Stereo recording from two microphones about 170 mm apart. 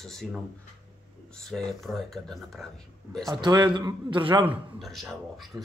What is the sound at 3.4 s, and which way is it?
A man's voice, 25° right (ahead or behind).